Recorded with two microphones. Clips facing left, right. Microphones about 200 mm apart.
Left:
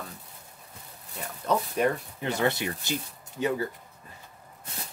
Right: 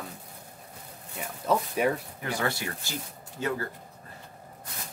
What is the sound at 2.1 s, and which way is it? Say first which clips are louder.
Speech: left 4 dB; 20° left (ahead or behind).